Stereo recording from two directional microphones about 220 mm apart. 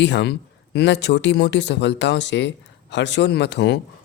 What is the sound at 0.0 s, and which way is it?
Speech, 50° left (ahead or behind).